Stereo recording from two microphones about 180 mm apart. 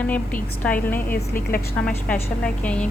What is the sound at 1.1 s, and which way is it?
Speech, 50° left (ahead or behind).